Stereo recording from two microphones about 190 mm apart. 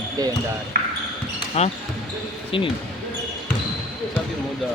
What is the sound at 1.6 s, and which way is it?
Speech, 35° left (ahead or behind).